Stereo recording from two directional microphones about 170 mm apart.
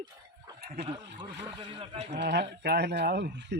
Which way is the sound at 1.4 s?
30° right (ahead or behind).